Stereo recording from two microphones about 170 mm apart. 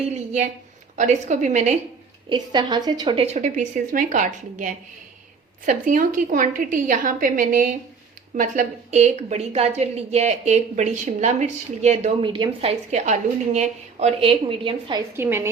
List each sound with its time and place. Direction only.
0.9 s a woman's voice: 45° right (ahead or behind)
2.3 s a woman's voice: 25° right (ahead or behind)
3.2 s a woman's voice: 45° right (ahead or behind)
12.2 s a woman's voice: 30° right (ahead or behind)
12.9 s a woman's voice: 40° right (ahead or behind)
15.1 s a woman's voice: 15° right (ahead or behind)